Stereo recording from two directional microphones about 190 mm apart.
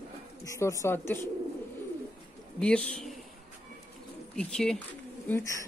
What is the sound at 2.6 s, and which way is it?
Speech, 5° left (ahead or behind).